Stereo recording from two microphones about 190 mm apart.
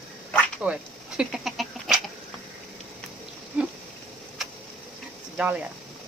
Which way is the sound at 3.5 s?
10° right (ahead or behind).